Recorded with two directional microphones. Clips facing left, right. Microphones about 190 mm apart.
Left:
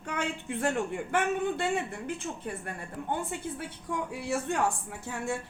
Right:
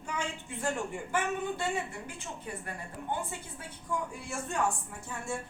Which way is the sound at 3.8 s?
70° left (ahead or behind).